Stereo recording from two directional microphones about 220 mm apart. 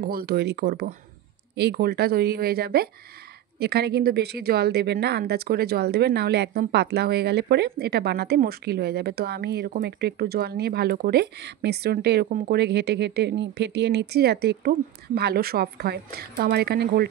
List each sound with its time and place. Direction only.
0.0 s a woman's voice: 45° right (ahead or behind)